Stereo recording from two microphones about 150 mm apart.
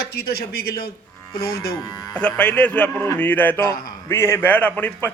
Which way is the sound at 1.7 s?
25° left (ahead or behind).